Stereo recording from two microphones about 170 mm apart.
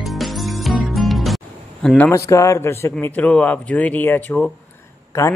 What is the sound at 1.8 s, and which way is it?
Speech, 10° left (ahead or behind).